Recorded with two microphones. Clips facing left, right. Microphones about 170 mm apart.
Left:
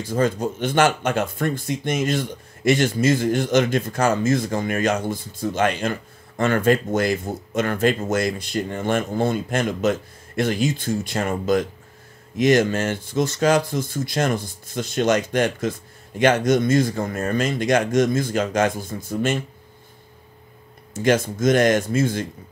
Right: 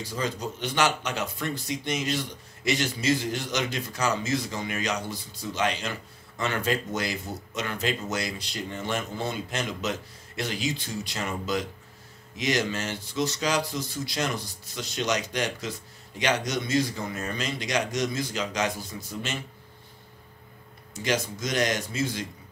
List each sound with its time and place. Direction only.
0.0 s speech: 50° left (ahead or behind)
20.9 s speech: 50° left (ahead or behind)